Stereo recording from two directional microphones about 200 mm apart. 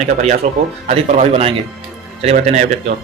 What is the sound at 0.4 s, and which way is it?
A man's voice, 35° right (ahead or behind).